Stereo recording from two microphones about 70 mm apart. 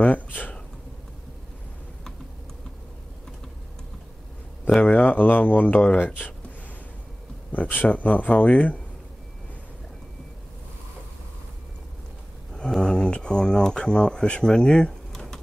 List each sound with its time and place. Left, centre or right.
0.0 s speech: left
4.6 s speech: centre
7.5 s speech: left
12.5 s a sound: centre